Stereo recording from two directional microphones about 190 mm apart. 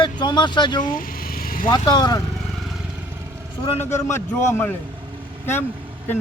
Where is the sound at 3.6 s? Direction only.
30° left (ahead or behind).